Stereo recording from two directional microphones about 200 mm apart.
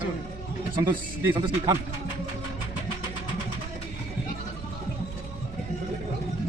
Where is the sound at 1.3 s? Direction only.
25° right (ahead or behind).